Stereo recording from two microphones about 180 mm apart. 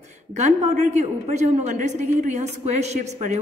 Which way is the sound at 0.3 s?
40° right (ahead or behind).